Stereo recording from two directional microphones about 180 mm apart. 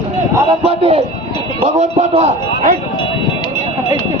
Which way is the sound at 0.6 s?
35° right (ahead or behind).